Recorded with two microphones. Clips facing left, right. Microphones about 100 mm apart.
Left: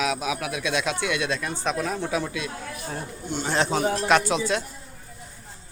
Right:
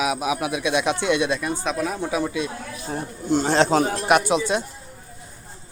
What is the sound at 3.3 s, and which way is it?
Speech, 35° right (ahead or behind).